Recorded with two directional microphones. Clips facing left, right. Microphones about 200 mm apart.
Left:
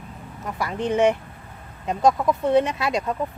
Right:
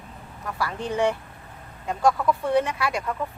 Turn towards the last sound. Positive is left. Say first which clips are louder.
# left 3 dB
turn(degrees=20)  # may be behind; listen again after turning